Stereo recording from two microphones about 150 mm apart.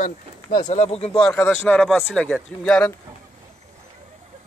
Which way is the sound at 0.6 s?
50° left (ahead or behind).